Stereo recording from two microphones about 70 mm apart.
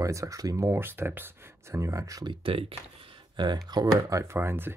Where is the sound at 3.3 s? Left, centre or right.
Right.